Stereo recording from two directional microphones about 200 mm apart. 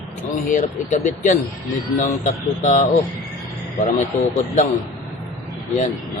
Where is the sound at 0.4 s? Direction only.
40° left (ahead or behind).